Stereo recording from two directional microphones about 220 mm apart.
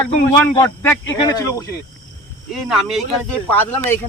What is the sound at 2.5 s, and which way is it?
Speech, centre (ahead or behind).